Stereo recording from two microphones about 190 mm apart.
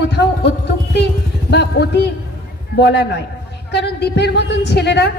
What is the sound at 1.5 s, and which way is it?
A woman's voice, 60° left (ahead or behind).